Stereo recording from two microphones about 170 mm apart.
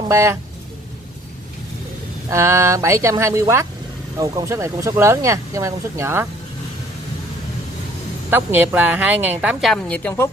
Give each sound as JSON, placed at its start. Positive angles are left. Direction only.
{"t": 0.1, "sound": "speech", "side_deg": -15}
{"t": 2.2, "sound": "speech", "side_deg": -15}
{"t": 8.3, "sound": "speech", "side_deg": -10}